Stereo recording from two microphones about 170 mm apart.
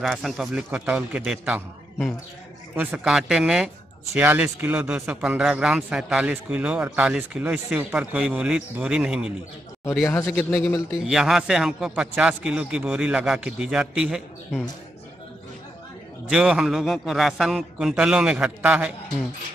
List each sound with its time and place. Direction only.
0.0 s a man's voice: centre (ahead or behind)
2.7 s a man's voice: 10° right (ahead or behind)
10.0 s a man's voice: 15° left (ahead or behind); by 14.6 s 5° right (ahead or behind)
16.3 s a man's voice: 5° right (ahead or behind)